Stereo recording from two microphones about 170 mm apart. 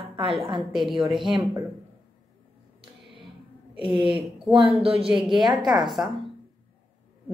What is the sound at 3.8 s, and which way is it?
A woman's voice, 30° right (ahead or behind).